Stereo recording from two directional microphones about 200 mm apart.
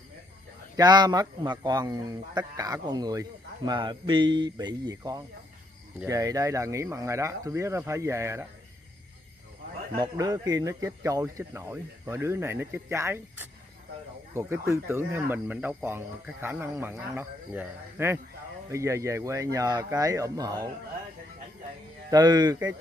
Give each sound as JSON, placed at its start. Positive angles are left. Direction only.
{"t": 0.7, "sound": "a man's voice", "side_deg": -20}
{"t": 9.9, "sound": "speech", "side_deg": -20}
{"t": 22.1, "sound": "a man's voice", "side_deg": -20}